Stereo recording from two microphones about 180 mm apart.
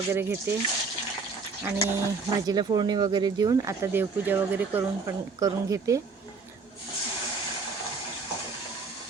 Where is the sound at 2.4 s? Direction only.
20° right (ahead or behind).